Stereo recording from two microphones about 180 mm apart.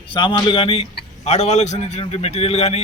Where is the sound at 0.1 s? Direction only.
25° left (ahead or behind).